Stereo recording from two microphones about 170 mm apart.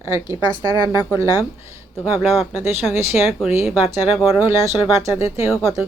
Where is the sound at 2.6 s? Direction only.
15° right (ahead or behind).